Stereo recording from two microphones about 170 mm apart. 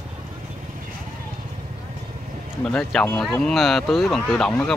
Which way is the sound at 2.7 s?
5° left (ahead or behind).